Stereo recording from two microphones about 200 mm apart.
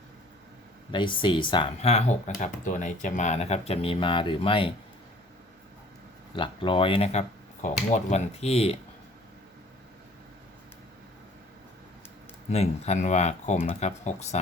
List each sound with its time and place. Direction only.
0.9 s speech: 25° left (ahead or behind)
6.3 s speech: 25° left (ahead or behind)
12.5 s speech: 35° left (ahead or behind)